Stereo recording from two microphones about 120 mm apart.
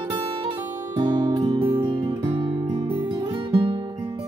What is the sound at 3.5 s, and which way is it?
Music, 45° right (ahead or behind).